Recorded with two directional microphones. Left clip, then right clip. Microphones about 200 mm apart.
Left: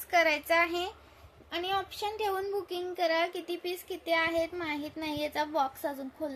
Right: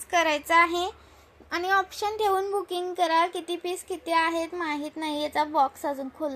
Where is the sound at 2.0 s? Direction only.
15° right (ahead or behind).